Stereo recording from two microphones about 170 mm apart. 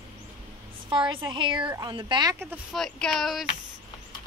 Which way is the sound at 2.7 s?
5° left (ahead or behind).